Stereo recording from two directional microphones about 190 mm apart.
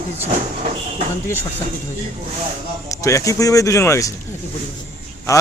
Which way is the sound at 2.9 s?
15° left (ahead or behind).